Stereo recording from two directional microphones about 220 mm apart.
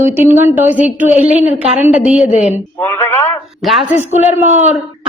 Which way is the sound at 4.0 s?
30° left (ahead or behind).